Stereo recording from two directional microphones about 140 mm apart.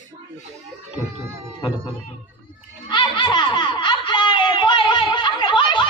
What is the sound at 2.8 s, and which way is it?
Snicker, 35° left (ahead or behind).